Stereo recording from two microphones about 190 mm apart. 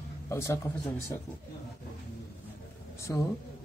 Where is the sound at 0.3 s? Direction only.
15° left (ahead or behind).